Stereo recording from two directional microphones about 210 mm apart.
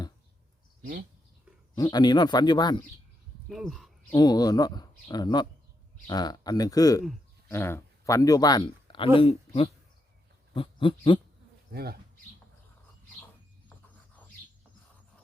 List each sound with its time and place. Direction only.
1.7 s speech: 20° left (ahead or behind)
3.5 s speech: centre (ahead or behind)
4.1 s speech: 20° left (ahead or behind)
10.5 s a sound: 25° left (ahead or behind)
11.7 s speech: 50° right (ahead or behind)
13.7 s a sound: 5° left (ahead or behind)